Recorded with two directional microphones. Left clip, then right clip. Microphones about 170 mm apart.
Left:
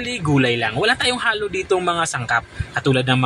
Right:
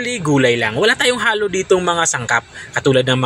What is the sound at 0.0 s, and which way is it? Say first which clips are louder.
Speech: right 4 dB; 20° right (ahead or behind).